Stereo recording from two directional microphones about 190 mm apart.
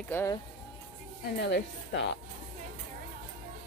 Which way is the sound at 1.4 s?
65° left (ahead or behind).